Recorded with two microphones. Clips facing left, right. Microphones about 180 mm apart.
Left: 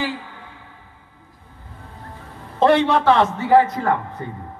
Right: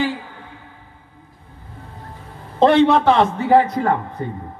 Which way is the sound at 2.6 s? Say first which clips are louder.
Right 3 dB; 20° right (ahead or behind).